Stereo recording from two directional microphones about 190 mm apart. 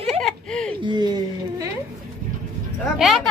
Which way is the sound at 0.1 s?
Centre (ahead or behind).